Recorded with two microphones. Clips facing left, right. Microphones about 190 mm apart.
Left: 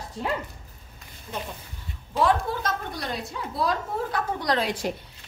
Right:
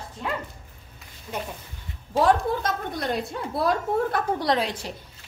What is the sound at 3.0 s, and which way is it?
A woman's voice, 60° right (ahead or behind).